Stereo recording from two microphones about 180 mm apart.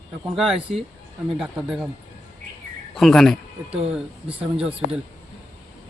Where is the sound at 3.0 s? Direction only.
Centre (ahead or behind).